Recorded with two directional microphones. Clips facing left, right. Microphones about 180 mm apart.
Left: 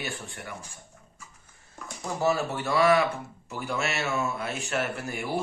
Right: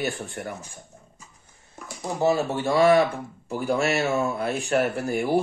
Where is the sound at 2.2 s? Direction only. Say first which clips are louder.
Right 4 dB; 20° right (ahead or behind).